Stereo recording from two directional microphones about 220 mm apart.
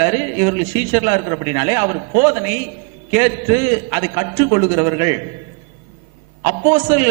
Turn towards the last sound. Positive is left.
turn(degrees=-15)  # may be behind; listen again after turning